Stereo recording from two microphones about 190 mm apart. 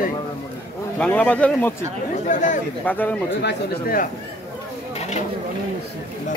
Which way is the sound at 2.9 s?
10° left (ahead or behind).